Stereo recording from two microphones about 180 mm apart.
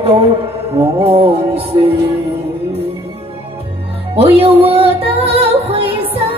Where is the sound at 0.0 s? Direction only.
35° right (ahead or behind).